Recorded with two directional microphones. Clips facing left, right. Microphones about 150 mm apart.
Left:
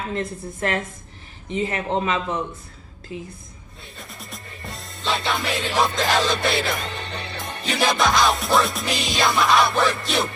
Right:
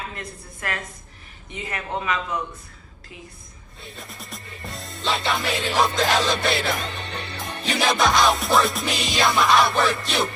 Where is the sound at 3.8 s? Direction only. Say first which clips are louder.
Right 1 dB; centre (ahead or behind).